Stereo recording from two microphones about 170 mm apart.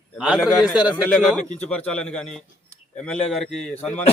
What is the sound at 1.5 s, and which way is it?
Speech, 40° left (ahead or behind).